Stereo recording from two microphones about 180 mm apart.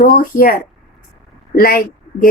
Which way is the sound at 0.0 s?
50° left (ahead or behind).